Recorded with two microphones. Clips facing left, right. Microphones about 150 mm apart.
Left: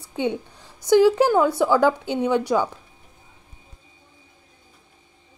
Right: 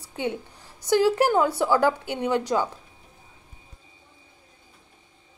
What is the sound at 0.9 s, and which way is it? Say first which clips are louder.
A woman's voice: left 4 dB; 15° left (ahead or behind).